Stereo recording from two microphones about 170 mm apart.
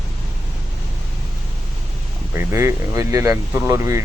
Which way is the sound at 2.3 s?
15° right (ahead or behind).